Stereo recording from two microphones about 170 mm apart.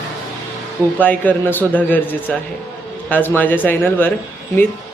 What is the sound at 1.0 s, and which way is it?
A man's voice, 10° left (ahead or behind).